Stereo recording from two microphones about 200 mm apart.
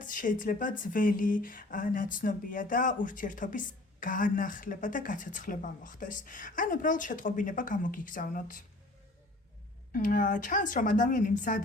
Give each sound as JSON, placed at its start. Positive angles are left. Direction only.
{"t": 0.0, "sound": "speech", "side_deg": 40}
{"t": 9.9, "sound": "speech", "side_deg": 40}